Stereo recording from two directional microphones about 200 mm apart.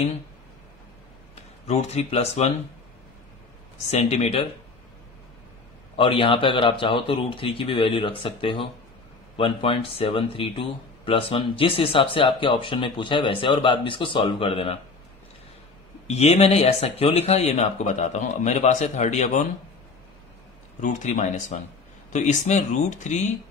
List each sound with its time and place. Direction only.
1.7 s speech: 35° left (ahead or behind)
3.9 s speech: 30° left (ahead or behind)
5.9 s speech: 25° left (ahead or behind)
16.1 s speech: 30° left (ahead or behind)
20.8 s speech: 35° left (ahead or behind)